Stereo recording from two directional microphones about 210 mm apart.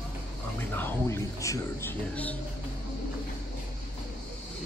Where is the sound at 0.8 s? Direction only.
15° left (ahead or behind).